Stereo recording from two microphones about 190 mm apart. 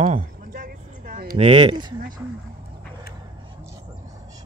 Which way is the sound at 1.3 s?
30° right (ahead or behind).